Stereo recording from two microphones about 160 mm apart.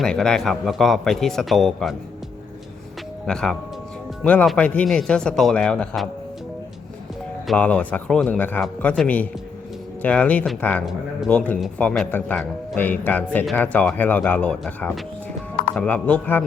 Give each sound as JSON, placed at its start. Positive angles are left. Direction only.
{"t": 0.0, "sound": "speech", "side_deg": 5}
{"t": 3.2, "sound": "speech", "side_deg": 5}
{"t": 7.4, "sound": "a man's voice", "side_deg": 5}